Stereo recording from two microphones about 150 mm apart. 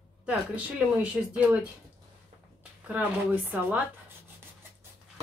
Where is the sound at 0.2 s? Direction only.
10° right (ahead or behind).